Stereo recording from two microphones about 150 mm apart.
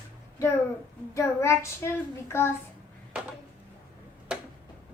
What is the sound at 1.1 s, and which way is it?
Child singing, 20° left (ahead or behind).